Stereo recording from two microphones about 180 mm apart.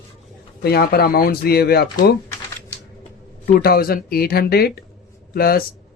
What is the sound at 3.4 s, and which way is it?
Speech, 55° left (ahead or behind).